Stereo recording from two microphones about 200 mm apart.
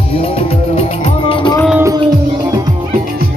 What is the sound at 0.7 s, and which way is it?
Music, 30° left (ahead or behind).